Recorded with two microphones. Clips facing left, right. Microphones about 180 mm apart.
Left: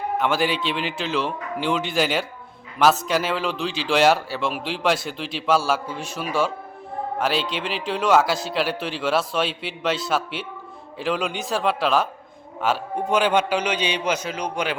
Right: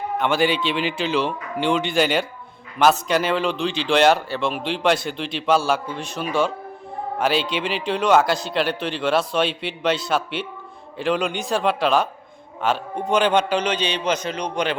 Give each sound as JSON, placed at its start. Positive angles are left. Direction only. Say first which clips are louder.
{"t": 0.2, "sound": "a man's voice", "louder": "right 3 dB", "side_deg": 0}